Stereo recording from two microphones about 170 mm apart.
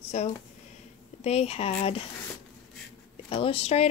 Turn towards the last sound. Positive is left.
turn(degrees=35)  # may be behind; listen again after turning